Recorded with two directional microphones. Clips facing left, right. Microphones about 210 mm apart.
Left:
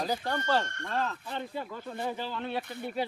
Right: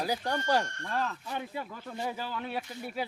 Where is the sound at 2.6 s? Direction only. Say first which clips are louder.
Left 2 dB; 60° left (ahead or behind).